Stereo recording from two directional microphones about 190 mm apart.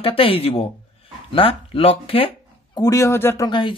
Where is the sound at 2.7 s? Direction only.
15° left (ahead or behind).